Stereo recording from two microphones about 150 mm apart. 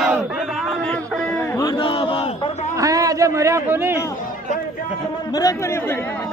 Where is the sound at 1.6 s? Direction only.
30° left (ahead or behind).